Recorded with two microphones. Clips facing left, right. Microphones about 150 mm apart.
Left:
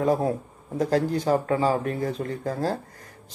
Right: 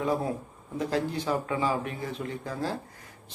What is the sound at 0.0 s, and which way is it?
Speech, 40° left (ahead or behind).